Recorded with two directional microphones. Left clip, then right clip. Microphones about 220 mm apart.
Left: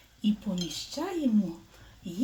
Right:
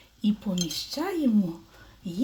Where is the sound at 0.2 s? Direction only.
35° right (ahead or behind).